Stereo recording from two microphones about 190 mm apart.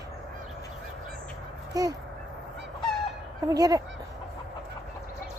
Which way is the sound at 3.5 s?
20° right (ahead or behind).